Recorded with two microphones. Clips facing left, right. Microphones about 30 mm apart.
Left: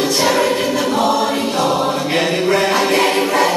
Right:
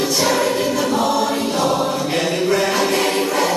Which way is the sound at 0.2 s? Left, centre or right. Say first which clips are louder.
Left 2 dB; centre.